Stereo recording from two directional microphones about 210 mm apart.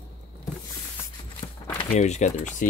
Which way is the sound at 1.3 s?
25° left (ahead or behind).